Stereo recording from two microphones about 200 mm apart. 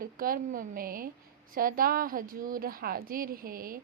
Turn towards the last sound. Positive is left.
turn(degrees=-45)  # may be behind; listen again after turning